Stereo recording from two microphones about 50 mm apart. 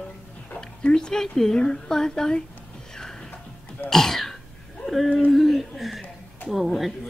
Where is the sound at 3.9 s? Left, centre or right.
Centre.